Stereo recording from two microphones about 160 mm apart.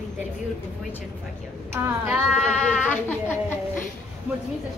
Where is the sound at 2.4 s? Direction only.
5° left (ahead or behind).